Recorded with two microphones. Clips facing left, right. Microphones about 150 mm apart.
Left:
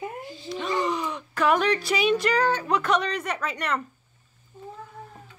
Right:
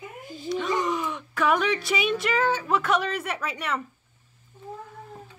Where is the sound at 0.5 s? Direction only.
Centre (ahead or behind).